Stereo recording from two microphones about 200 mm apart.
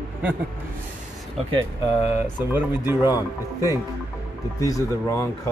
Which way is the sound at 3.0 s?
20° left (ahead or behind).